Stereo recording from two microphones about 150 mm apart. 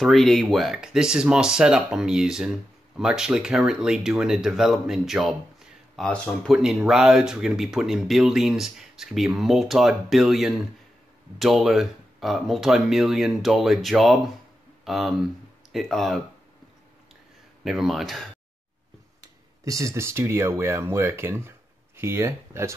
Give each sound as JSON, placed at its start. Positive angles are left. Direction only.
{"t": 0.0, "sound": "speech", "side_deg": 0}
{"t": 17.6, "sound": "speech", "side_deg": 0}
{"t": 19.6, "sound": "speech", "side_deg": -20}